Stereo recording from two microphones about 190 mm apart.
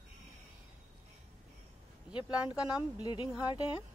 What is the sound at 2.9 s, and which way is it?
Speech, 25° left (ahead or behind).